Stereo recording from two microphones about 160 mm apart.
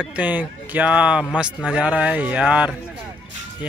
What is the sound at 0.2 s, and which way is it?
Speech, 10° right (ahead or behind).